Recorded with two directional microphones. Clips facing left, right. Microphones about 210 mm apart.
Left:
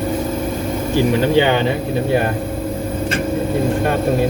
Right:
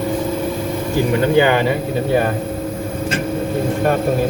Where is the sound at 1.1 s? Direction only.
25° left (ahead or behind).